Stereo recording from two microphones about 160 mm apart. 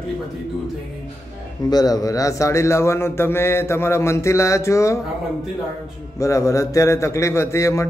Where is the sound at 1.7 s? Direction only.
25° left (ahead or behind).